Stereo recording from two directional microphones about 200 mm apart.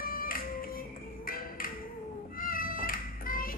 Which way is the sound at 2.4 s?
45° left (ahead or behind).